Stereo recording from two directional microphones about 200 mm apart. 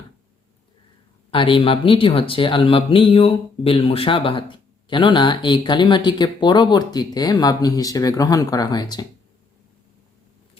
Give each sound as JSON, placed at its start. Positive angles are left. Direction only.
{"t": 1.3, "sound": "speech", "side_deg": 25}